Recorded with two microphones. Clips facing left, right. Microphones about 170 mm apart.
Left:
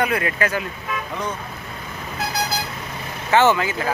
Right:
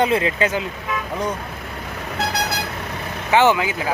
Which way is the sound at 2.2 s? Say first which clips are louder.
Right 1 dB; 65° right (ahead or behind).